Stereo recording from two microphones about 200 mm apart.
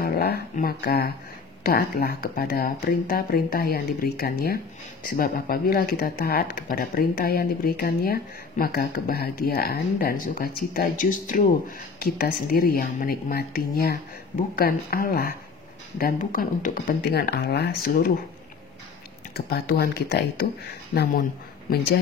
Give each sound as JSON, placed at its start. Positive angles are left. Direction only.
{"t": 0.0, "sound": "speech", "side_deg": 50}
{"t": 19.3, "sound": "speech", "side_deg": 50}